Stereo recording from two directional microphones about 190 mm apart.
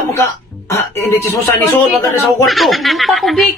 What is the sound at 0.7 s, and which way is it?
Speech, 15° left (ahead or behind).